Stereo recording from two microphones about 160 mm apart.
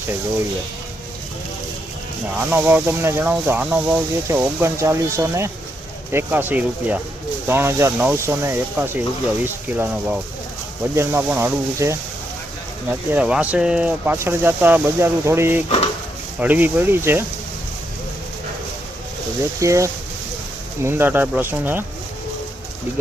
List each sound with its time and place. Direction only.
2.4 s speech: 10° right (ahead or behind)
19.5 s speech: 20° right (ahead or behind)